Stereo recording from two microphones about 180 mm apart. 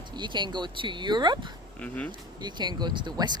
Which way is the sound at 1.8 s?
5° left (ahead or behind).